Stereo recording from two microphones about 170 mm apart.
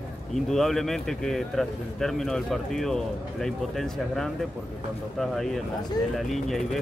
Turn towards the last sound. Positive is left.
turn(degrees=0)  # may be behind; listen again after turning